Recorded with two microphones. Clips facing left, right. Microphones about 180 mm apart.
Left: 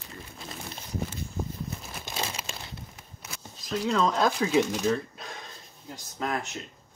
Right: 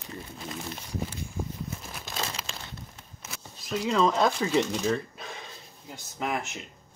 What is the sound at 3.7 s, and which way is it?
Speech, centre (ahead or behind).